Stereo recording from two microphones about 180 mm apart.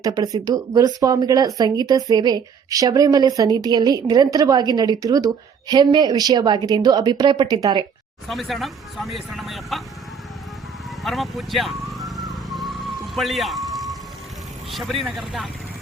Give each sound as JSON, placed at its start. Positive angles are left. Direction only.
{"t": 0.0, "sound": "a woman's voice", "side_deg": -20}
{"t": 8.3, "sound": "speech", "side_deg": 0}
{"t": 11.0, "sound": "speech", "side_deg": 0}
{"t": 13.1, "sound": "speech", "side_deg": 0}